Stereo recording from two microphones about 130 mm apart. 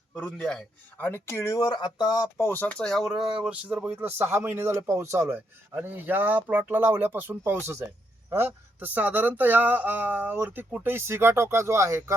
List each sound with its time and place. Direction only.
0.1 s speech: 5° left (ahead or behind); by 2.2 s 30° left (ahead or behind)
2.4 s speech: 15° left (ahead or behind); by 12.1 s 20° right (ahead or behind)